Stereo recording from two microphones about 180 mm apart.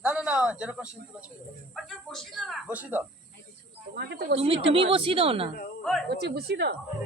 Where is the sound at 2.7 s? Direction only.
10° right (ahead or behind).